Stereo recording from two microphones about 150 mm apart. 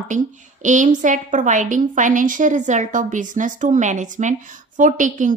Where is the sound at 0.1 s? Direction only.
55° right (ahead or behind).